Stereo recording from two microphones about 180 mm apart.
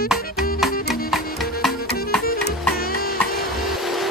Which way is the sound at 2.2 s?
55° left (ahead or behind).